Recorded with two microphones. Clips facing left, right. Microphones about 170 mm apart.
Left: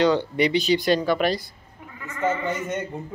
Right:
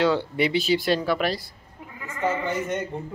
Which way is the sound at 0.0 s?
5° right (ahead or behind).